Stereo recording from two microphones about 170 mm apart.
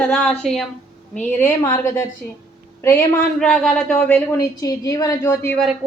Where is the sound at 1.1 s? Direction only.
15° left (ahead or behind).